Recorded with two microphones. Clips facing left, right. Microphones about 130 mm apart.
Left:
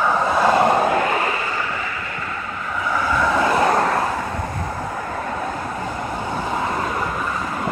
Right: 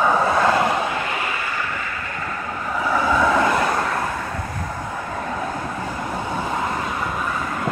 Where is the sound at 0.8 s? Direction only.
45° left (ahead or behind).